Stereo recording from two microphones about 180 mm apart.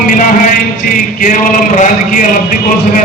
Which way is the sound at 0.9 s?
50° left (ahead or behind).